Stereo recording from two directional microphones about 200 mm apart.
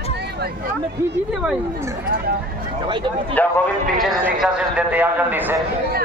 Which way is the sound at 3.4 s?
10° left (ahead or behind).